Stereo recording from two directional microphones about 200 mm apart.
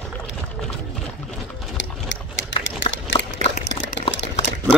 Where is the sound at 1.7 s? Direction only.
65° left (ahead or behind).